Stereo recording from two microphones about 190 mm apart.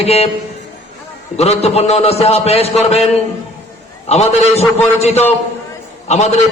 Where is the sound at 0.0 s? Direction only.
35° left (ahead or behind).